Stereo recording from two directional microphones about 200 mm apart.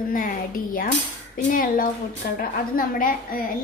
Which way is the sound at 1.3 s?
45° left (ahead or behind).